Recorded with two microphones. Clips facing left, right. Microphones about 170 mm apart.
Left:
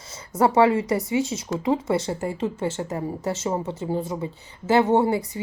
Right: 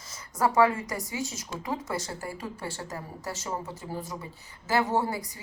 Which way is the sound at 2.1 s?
25° left (ahead or behind).